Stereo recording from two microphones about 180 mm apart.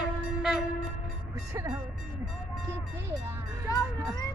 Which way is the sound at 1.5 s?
15° right (ahead or behind).